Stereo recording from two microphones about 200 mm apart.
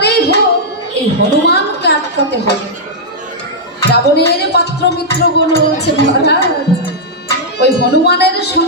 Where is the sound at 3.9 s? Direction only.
55° left (ahead or behind).